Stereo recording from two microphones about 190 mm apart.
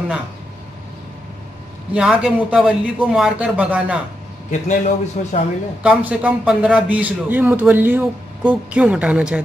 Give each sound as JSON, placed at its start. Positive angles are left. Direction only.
{"t": 2.0, "sound": "speech", "side_deg": -5}
{"t": 4.5, "sound": "a man's voice", "side_deg": 40}
{"t": 5.8, "sound": "a man's voice", "side_deg": -5}